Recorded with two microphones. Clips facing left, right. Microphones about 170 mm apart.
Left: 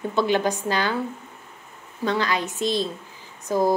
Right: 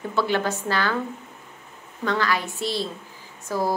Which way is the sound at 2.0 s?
20° left (ahead or behind).